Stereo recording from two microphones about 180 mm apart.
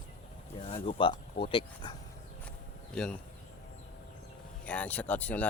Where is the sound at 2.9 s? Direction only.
5° left (ahead or behind).